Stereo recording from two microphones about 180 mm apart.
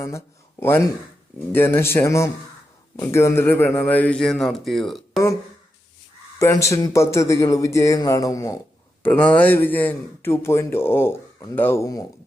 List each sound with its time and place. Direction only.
1.5 s speech: 10° left (ahead or behind)
6.4 s speech: 15° left (ahead or behind)